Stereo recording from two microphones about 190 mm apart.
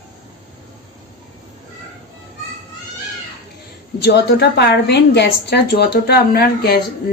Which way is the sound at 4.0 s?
60° left (ahead or behind).